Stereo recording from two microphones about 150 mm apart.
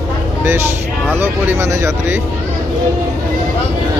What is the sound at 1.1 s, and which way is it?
Speech, 15° right (ahead or behind).